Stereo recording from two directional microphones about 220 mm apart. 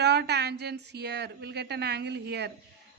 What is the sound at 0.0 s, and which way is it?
A woman's voice, 50° right (ahead or behind).